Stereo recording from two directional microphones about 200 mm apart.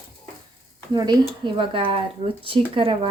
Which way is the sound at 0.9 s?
20° right (ahead or behind).